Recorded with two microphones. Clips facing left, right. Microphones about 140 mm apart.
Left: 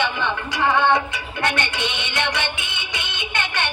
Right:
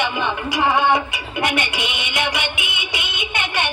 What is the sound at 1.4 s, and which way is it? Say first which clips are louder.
Music: right 1 dB; 10° right (ahead or behind).